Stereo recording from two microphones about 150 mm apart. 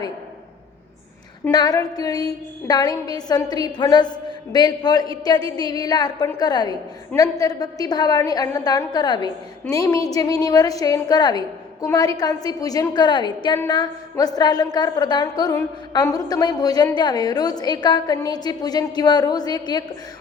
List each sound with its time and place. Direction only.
1.5 s a woman's voice: 25° left (ahead or behind)